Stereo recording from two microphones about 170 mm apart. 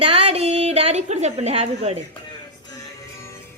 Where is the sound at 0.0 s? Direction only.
35° right (ahead or behind).